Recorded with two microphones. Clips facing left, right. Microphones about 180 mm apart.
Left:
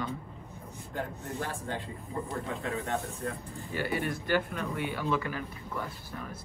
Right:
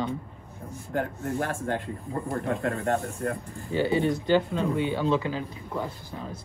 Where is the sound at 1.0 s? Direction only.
60° right (ahead or behind).